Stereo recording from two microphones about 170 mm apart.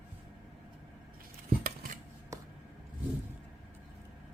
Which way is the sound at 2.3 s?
20° right (ahead or behind).